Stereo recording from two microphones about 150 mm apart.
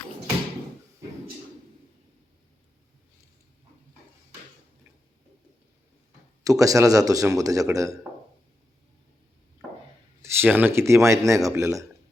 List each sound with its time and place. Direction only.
6.4 s speech: 20° right (ahead or behind)
10.2 s speech: 10° right (ahead or behind)